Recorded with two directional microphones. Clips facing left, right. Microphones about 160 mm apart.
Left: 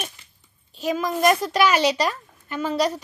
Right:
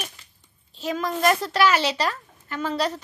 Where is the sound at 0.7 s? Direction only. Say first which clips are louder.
Left 3 dB; 15° left (ahead or behind).